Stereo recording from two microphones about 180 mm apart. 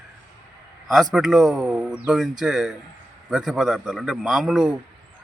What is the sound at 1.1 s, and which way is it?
Speech, centre (ahead or behind).